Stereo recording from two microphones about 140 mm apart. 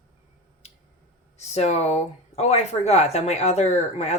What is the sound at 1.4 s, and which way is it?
Speech, 50° left (ahead or behind).